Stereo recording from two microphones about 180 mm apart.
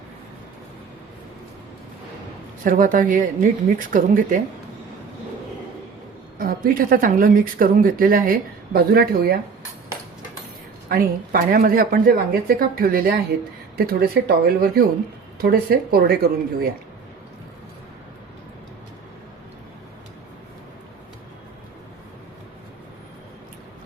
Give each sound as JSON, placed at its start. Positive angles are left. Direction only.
{"t": 2.6, "sound": "a woman's voice", "side_deg": -50}
{"t": 6.4, "sound": "a woman's voice", "side_deg": -55}
{"t": 10.8, "sound": "a woman's voice", "side_deg": -55}